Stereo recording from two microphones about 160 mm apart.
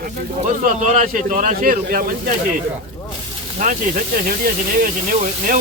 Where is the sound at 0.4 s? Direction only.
50° right (ahead or behind).